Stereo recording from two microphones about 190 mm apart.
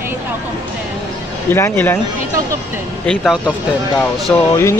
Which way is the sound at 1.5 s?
15° left (ahead or behind).